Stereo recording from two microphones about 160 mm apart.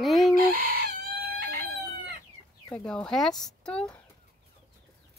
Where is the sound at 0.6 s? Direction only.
70° right (ahead or behind).